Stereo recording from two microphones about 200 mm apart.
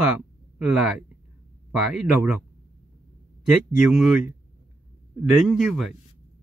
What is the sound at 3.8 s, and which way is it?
Speech, 5° right (ahead or behind).